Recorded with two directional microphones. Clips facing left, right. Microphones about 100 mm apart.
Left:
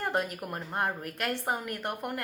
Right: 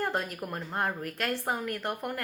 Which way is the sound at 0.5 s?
20° left (ahead or behind).